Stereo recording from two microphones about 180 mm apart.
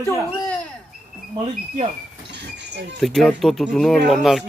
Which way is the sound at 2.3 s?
75° right (ahead or behind).